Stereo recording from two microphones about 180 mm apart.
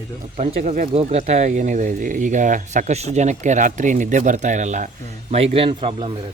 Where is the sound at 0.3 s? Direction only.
40° right (ahead or behind).